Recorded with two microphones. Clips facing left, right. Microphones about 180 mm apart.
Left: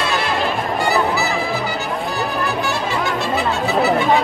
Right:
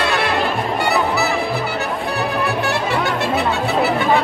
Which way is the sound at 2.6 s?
60° right (ahead or behind).